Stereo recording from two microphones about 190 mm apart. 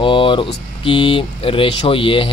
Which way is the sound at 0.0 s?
25° left (ahead or behind).